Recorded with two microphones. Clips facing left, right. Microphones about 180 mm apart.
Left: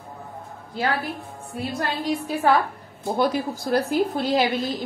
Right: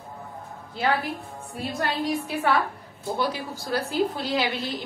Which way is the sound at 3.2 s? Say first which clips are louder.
Left 7 dB; 50° left (ahead or behind).